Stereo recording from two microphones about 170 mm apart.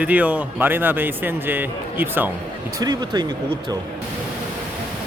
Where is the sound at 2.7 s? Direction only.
20° right (ahead or behind).